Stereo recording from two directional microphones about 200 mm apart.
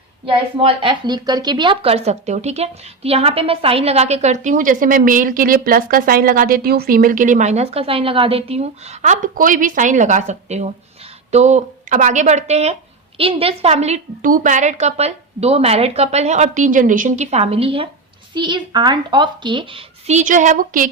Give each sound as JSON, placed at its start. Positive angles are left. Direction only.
{"t": 0.3, "sound": "a woman's voice", "side_deg": -25}